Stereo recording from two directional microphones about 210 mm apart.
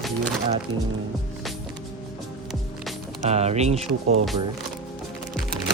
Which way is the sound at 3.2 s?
30° right (ahead or behind).